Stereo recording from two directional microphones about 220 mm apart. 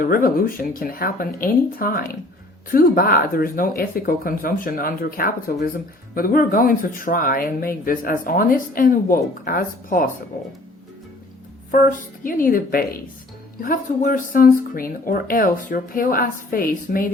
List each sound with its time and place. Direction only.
0.0 s speech: 40° left (ahead or behind)
11.7 s speech: 40° left (ahead or behind)